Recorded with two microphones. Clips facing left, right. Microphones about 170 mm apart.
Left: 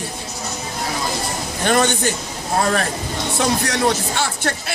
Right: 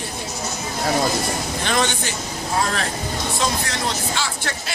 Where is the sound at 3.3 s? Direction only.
65° left (ahead or behind).